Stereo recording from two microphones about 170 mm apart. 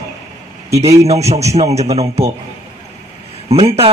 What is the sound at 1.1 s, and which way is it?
A man's voice, 40° right (ahead or behind).